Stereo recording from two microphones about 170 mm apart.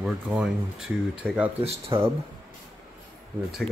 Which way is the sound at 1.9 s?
15° right (ahead or behind).